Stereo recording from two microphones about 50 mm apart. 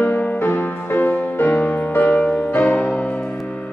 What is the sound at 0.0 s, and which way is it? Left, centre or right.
Music, left.